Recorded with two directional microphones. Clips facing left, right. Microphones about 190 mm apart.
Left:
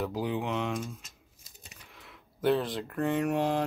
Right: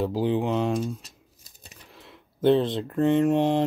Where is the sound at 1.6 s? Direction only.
35° right (ahead or behind).